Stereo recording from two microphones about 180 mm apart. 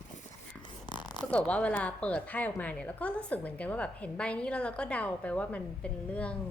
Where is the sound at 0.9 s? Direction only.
25° left (ahead or behind).